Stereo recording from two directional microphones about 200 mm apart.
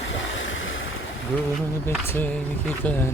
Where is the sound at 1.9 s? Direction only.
10° left (ahead or behind).